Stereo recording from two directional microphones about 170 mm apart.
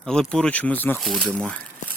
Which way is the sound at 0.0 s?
5° left (ahead or behind).